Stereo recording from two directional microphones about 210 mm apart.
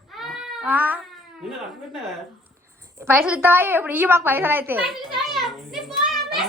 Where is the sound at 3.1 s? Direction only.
5° right (ahead or behind).